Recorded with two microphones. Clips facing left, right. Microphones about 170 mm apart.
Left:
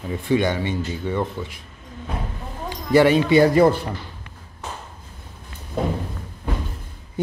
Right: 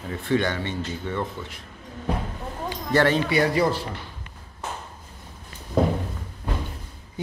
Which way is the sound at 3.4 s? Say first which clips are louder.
Left 7 dB; 50° left (ahead or behind).